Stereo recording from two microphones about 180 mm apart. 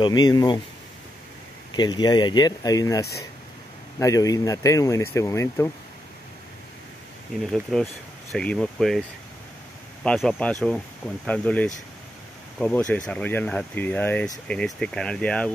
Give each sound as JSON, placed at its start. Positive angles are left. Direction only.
{"t": 0.0, "sound": "speech", "side_deg": 25}
{"t": 1.7, "sound": "speech", "side_deg": 25}
{"t": 7.5, "sound": "speech", "side_deg": 0}
{"t": 10.0, "sound": "speech", "side_deg": 5}